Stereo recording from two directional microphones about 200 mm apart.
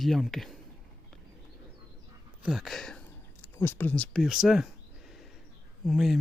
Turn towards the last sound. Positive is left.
turn(degrees=0)  # may be behind; listen again after turning